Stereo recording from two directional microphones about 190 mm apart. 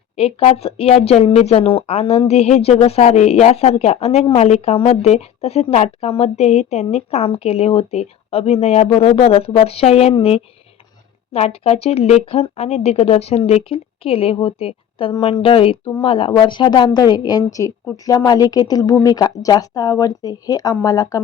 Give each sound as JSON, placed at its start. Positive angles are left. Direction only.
{"t": 0.2, "sound": "speech", "side_deg": 30}